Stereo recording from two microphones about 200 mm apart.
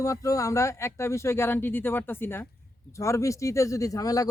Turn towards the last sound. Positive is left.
turn(degrees=15)  # may be behind; listen again after turning